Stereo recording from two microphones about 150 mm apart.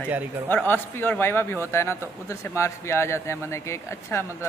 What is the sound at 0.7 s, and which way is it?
A man's voice, 15° left (ahead or behind).